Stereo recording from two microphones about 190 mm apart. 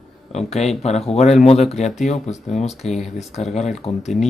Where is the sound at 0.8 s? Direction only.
35° left (ahead or behind).